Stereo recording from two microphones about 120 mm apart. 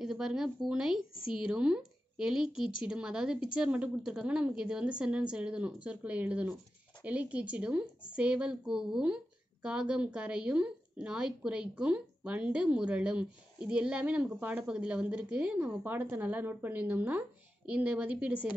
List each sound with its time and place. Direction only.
0.0 s a woman's voice: 5° right (ahead or behind)